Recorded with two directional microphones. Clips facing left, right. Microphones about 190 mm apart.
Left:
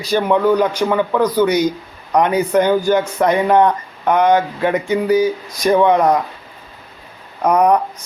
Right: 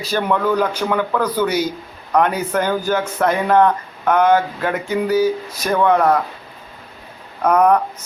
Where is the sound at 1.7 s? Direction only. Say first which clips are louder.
Left 2 dB; 15° left (ahead or behind).